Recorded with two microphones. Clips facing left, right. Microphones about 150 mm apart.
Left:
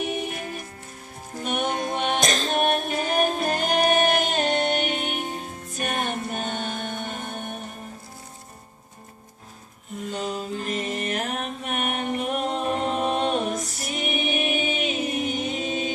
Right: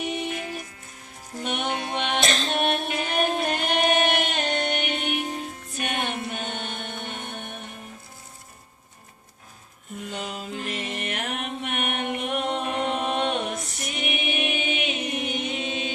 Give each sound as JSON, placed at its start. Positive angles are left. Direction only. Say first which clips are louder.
{"t": 0.1, "sound": "music", "louder": "even", "side_deg": 45}
{"t": 10.2, "sound": "music", "louder": "left 4 dB", "side_deg": 40}